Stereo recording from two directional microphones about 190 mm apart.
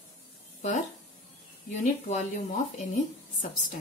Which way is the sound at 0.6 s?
40° left (ahead or behind).